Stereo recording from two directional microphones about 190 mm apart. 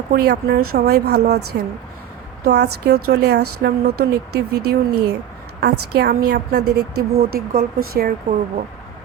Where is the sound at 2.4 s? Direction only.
60° right (ahead or behind).